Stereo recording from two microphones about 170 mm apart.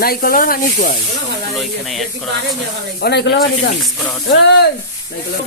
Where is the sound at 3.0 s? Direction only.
75° left (ahead or behind).